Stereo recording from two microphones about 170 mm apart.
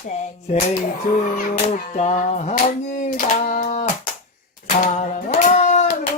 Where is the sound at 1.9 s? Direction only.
40° left (ahead or behind).